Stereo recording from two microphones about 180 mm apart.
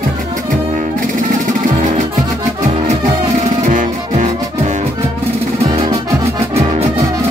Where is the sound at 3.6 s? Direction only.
40° right (ahead or behind).